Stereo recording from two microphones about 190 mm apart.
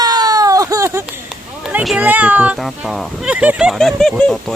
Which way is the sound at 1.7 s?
5° right (ahead or behind).